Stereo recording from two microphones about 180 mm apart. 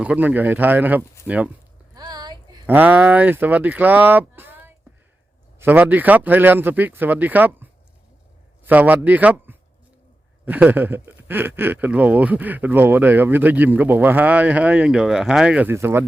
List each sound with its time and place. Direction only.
0.0 s speech: 10° right (ahead or behind)
2.0 s a sound: 20° right (ahead or behind)
2.6 s a man's voice: 10° right (ahead or behind)